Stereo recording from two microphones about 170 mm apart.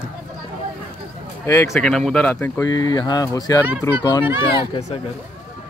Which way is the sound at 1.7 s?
5° left (ahead or behind).